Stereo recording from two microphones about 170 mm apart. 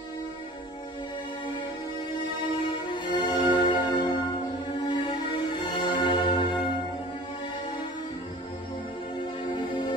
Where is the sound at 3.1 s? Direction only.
25° left (ahead or behind).